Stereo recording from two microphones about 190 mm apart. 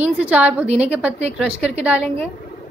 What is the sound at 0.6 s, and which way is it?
Speech, 35° right (ahead or behind).